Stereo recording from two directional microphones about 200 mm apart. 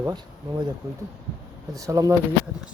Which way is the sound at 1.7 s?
15° right (ahead or behind).